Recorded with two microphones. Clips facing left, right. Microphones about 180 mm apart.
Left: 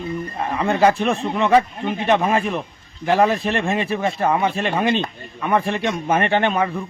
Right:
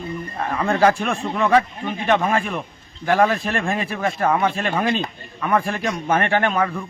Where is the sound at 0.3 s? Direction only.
Centre (ahead or behind).